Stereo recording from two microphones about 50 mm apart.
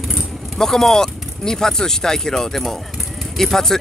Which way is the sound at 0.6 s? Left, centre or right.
Centre.